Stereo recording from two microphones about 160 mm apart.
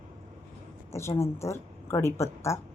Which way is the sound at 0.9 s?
15° left (ahead or behind).